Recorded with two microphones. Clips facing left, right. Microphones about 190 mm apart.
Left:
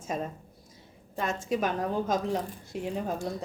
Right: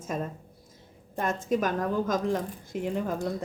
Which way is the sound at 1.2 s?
50° right (ahead or behind).